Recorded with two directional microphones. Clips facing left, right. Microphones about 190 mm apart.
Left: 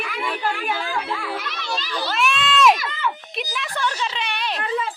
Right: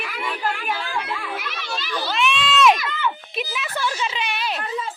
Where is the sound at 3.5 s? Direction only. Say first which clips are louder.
Left 1 dB; 5° right (ahead or behind).